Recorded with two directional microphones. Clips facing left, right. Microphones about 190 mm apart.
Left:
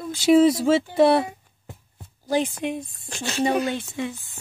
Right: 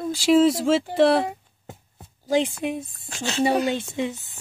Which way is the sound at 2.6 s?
5° right (ahead or behind).